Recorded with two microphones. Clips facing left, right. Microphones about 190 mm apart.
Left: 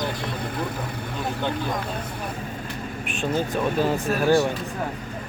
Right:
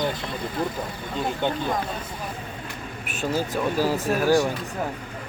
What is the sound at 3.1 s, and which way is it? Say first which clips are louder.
Speech: left 1 dB; 5° right (ahead or behind).